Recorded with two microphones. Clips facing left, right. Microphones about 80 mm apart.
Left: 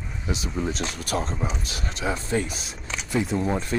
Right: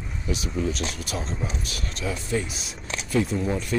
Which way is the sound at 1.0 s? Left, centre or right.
Left.